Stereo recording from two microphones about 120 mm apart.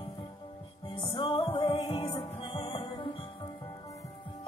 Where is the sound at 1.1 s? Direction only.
45° left (ahead or behind).